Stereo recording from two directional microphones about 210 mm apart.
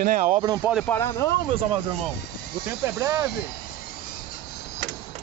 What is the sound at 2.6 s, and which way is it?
Speech, 15° right (ahead or behind).